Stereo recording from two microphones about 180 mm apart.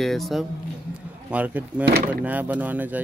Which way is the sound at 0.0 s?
Centre (ahead or behind).